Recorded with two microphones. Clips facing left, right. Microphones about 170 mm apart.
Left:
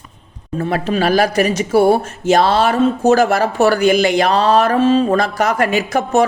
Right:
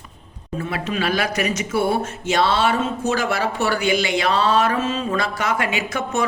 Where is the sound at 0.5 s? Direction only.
40° left (ahead or behind).